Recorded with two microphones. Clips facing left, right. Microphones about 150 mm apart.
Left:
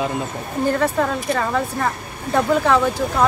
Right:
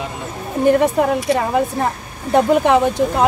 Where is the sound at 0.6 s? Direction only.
20° right (ahead or behind).